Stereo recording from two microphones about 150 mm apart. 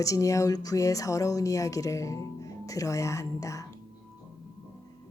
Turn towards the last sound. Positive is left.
turn(degrees=20)  # may be behind; listen again after turning